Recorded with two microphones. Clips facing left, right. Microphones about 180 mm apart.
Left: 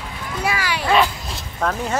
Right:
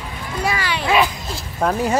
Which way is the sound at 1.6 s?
15° right (ahead or behind).